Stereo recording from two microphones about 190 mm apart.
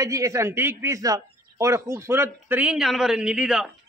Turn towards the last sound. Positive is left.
turn(degrees=-5)  # may be behind; listen again after turning